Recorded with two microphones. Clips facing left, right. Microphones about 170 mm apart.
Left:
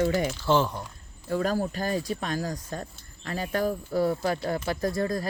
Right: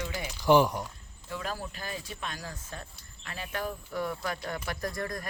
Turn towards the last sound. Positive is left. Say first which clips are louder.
# left 8 dB
turn(degrees=30)  # may be behind; listen again after turning